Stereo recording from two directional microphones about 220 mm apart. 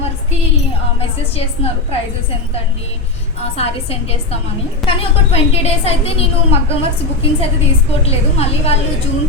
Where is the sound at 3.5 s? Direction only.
30° left (ahead or behind).